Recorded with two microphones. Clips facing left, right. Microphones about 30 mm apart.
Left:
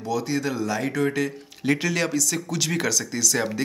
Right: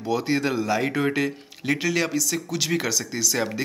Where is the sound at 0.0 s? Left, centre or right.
Right.